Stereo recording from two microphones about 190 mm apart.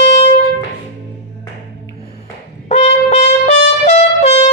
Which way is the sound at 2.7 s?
35° left (ahead or behind).